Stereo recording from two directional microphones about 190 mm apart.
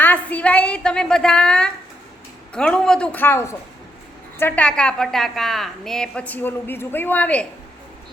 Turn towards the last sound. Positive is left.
turn(degrees=5)  # may be behind; listen again after turning